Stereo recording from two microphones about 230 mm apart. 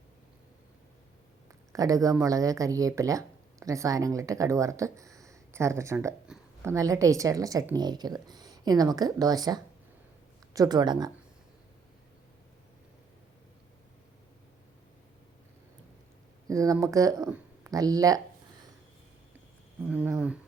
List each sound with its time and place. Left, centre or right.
1.7 s a woman's voice: centre
16.5 s a woman's voice: centre
19.9 s speech: centre